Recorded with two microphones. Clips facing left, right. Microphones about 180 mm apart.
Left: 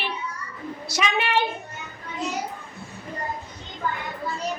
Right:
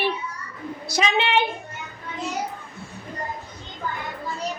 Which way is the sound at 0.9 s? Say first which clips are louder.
Right 2 dB; 25° right (ahead or behind).